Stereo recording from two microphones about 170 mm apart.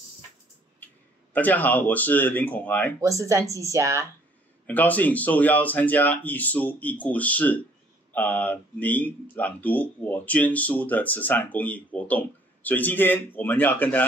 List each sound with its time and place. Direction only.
1.3 s speech: 10° left (ahead or behind)
3.0 s speech: 20° right (ahead or behind)
4.6 s speech: 10° left (ahead or behind)